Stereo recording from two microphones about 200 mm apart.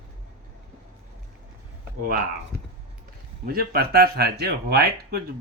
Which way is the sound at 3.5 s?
50° right (ahead or behind).